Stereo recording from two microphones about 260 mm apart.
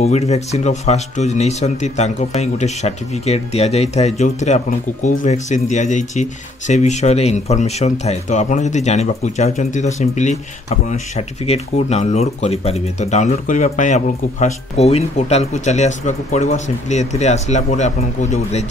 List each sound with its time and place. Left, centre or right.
0.0 s speech: left